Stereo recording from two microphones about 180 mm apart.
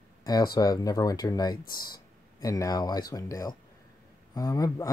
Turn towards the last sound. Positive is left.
turn(degrees=20)  # may be behind; listen again after turning